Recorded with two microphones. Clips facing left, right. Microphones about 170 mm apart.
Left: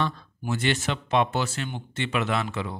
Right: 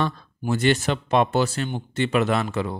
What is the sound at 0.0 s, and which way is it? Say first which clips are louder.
Speech: right 3 dB; 40° right (ahead or behind).